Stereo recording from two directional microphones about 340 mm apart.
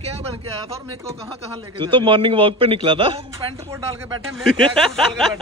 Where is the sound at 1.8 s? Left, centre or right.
Centre.